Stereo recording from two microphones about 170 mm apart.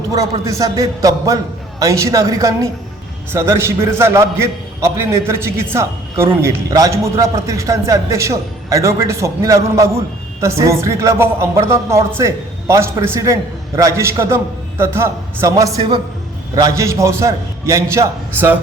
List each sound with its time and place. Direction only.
0.1 s a man's voice: 20° right (ahead or behind)